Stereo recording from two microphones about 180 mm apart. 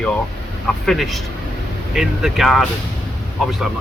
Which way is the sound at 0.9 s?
Centre (ahead or behind).